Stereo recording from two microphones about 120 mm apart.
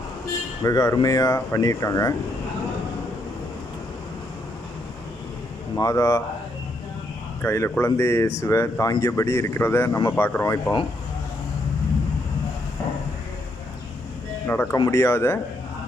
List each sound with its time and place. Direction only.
0.6 s speech: 30° left (ahead or behind)
5.7 s speech: 25° left (ahead or behind)
7.4 s speech: 20° left (ahead or behind)
14.4 s speech: 20° left (ahead or behind)